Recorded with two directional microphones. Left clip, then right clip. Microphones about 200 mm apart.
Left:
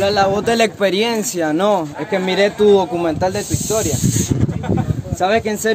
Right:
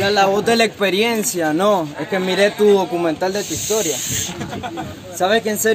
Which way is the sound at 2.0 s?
35° left (ahead or behind).